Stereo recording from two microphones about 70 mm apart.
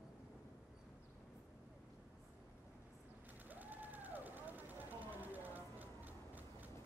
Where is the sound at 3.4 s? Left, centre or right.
Right.